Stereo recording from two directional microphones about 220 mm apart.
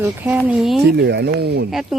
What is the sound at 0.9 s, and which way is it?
Speech, 50° right (ahead or behind).